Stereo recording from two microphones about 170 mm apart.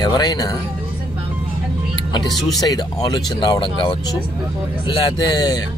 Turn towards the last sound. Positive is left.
turn(degrees=25)  # may be behind; listen again after turning